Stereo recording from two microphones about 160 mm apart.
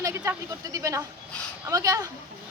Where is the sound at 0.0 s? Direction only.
20° right (ahead or behind).